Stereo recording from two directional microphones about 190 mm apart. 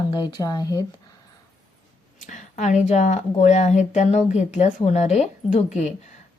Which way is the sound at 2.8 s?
35° left (ahead or behind).